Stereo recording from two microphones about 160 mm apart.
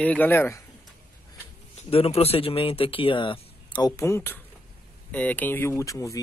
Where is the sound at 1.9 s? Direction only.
40° left (ahead or behind).